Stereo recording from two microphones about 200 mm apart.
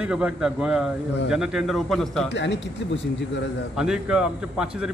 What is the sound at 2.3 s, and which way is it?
Speech, 60° left (ahead or behind).